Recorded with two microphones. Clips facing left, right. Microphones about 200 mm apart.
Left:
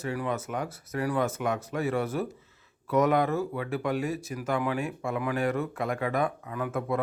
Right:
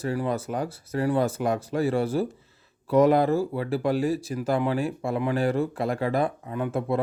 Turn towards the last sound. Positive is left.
turn(degrees=-30)  # may be behind; listen again after turning